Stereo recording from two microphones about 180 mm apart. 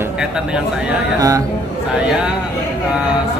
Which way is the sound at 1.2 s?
20° right (ahead or behind).